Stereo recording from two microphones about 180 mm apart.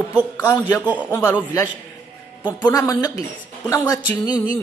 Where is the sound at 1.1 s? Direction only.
15° left (ahead or behind).